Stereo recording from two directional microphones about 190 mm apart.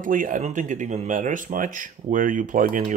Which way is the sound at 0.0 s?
45° right (ahead or behind).